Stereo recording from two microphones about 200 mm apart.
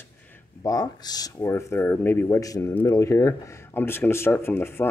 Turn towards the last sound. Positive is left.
turn(degrees=10)  # may be behind; listen again after turning